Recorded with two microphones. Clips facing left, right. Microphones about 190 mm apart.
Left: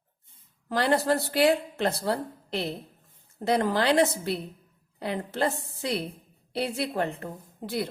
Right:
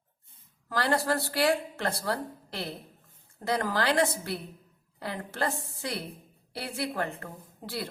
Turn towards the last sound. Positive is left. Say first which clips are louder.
# left 6 dB
turn(degrees=20)  # may be behind; listen again after turning